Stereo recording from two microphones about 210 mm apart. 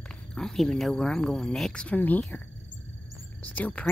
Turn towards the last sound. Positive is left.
turn(degrees=5)  # may be behind; listen again after turning